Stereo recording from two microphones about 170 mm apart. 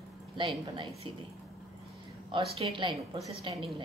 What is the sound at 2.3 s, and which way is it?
A woman's voice, 35° right (ahead or behind).